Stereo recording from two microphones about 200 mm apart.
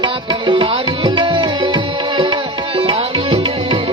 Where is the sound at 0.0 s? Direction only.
25° right (ahead or behind).